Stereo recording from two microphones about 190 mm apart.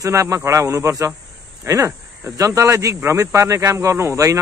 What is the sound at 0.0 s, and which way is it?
Speech, 15° right (ahead or behind).